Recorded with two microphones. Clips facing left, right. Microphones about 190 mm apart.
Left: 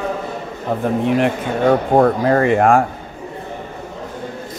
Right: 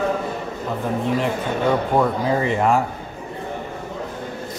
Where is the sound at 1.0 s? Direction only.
65° left (ahead or behind).